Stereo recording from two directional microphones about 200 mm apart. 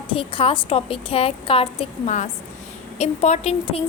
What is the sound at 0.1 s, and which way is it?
A woman's voice, 25° left (ahead or behind).